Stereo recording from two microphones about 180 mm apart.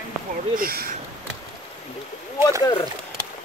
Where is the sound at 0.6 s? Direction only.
55° right (ahead or behind).